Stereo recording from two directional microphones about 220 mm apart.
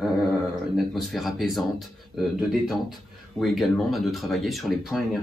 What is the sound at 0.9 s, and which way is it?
Speech, centre (ahead or behind).